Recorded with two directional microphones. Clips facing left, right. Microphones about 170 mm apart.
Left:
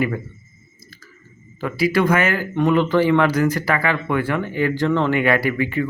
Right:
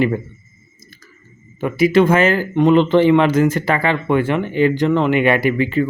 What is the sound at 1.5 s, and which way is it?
Speech, 20° right (ahead or behind).